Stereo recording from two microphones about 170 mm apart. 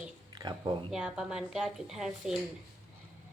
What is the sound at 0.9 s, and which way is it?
Speech, 5° right (ahead or behind).